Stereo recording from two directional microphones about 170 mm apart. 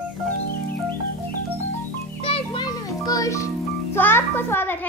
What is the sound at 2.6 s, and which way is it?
Music, 20° left (ahead or behind).